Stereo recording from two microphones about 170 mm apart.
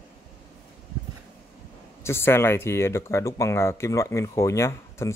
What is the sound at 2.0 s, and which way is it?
Speech, 15° left (ahead or behind).